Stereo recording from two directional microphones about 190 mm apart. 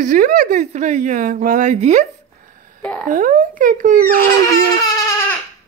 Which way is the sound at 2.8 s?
5° left (ahead or behind).